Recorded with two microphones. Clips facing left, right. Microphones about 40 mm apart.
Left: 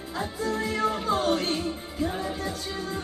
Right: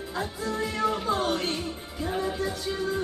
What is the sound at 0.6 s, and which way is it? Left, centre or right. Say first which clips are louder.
Music: even; left.